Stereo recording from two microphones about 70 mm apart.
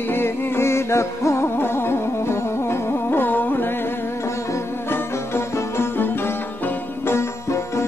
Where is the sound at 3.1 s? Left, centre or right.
Left.